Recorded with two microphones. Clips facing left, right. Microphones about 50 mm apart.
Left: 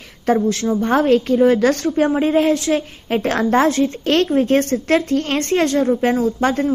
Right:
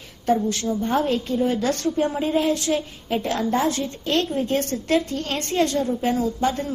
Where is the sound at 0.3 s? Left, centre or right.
Left.